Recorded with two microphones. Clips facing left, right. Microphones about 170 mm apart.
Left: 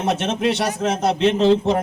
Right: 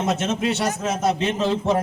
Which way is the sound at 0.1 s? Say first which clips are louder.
Left 6 dB; 65° left (ahead or behind).